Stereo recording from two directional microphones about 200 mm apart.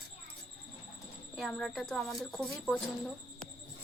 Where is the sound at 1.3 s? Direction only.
Centre (ahead or behind).